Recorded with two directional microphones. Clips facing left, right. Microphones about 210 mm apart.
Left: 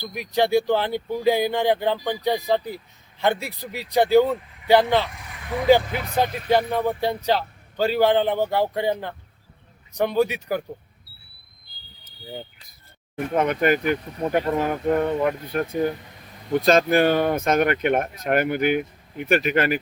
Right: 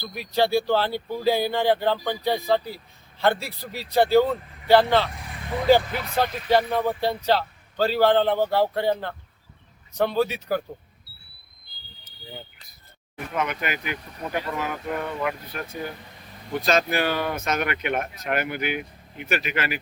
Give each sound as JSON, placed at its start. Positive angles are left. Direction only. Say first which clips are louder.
{"t": 0.0, "sound": "speech", "louder": "left 1 dB", "side_deg": 15}
{"t": 13.4, "sound": "speech", "louder": "left 9 dB", "side_deg": 50}